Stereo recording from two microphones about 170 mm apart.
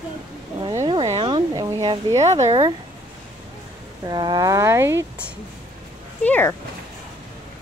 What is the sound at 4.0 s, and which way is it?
Speech, 25° right (ahead or behind).